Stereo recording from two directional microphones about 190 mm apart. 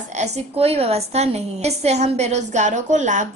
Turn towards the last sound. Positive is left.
turn(degrees=-40)  # may be behind; listen again after turning